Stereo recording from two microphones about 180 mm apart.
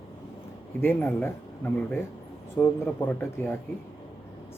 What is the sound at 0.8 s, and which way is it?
Speech, 10° left (ahead or behind).